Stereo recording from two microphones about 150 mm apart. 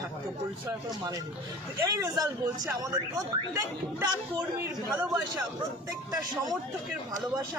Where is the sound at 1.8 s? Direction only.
25° right (ahead or behind).